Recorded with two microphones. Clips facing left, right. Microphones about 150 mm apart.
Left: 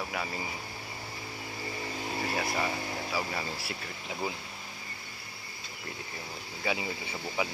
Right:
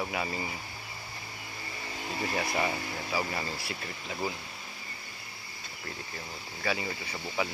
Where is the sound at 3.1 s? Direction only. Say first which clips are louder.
Right 3 dB; centre (ahead or behind).